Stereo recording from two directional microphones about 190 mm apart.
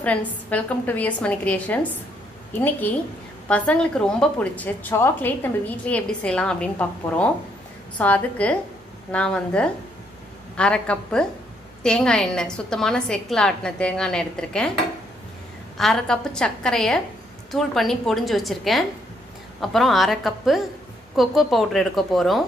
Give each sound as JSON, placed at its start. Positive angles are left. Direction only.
{"t": 0.0, "sound": "a woman's voice", "side_deg": 5}
{"t": 3.4, "sound": "a woman's voice", "side_deg": 5}
{"t": 15.8, "sound": "a woman's voice", "side_deg": 5}